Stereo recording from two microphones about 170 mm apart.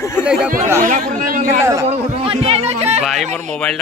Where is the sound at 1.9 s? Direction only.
35° right (ahead or behind).